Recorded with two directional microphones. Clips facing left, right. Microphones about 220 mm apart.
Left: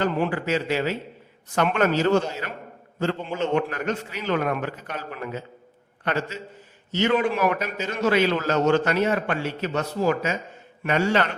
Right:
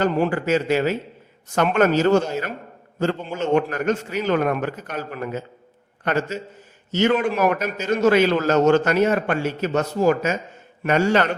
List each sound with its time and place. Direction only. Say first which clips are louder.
0.0 s a man's voice: right 4 dB; 45° right (ahead or behind)